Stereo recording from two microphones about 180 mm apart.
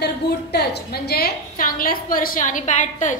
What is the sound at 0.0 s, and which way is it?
A woman's voice, 65° left (ahead or behind).